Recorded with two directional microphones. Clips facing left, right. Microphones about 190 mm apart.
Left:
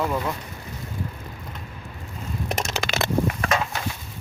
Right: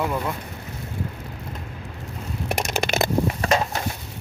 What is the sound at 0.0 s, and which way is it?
Speech, centre (ahead or behind).